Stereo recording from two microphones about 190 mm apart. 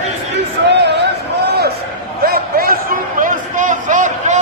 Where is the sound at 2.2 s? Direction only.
50° right (ahead or behind).